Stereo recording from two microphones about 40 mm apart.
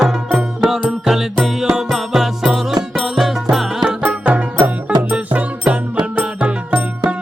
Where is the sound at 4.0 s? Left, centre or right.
Right.